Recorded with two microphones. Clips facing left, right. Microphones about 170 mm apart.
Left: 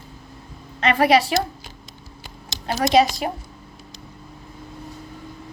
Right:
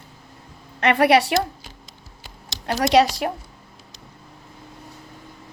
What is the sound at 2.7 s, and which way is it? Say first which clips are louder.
Speech: even; 70° right (ahead or behind).